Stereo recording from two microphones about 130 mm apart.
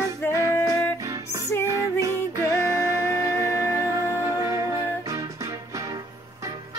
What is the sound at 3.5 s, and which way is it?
Music, 25° left (ahead or behind).